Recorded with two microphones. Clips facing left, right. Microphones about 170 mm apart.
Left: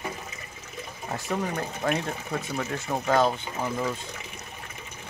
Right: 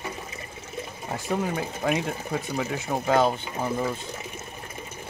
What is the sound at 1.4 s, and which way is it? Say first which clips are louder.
Speech: right 2 dB; 5° right (ahead or behind).